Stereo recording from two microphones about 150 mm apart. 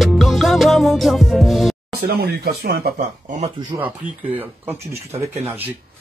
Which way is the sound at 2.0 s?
90° right.